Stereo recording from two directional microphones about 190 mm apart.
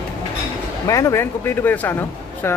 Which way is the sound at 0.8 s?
15° left (ahead or behind).